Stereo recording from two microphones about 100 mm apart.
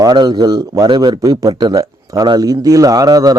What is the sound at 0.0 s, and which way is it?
A man's voice, 45° right (ahead or behind).